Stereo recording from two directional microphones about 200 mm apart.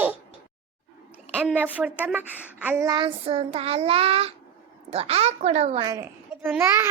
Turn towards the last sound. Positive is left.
turn(degrees=-10)  # may be behind; listen again after turning